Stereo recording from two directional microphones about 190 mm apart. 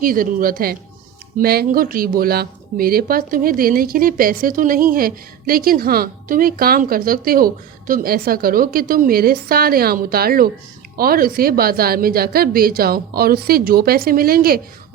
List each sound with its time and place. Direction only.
0.0 s speech: 50° right (ahead or behind)